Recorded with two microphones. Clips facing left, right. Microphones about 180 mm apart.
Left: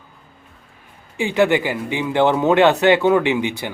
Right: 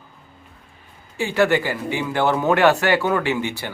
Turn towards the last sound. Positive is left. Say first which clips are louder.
# left 3 dB
turn(degrees=15)  # may be behind; listen again after turning